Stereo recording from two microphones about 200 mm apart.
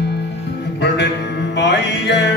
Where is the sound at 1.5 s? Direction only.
60° left (ahead or behind).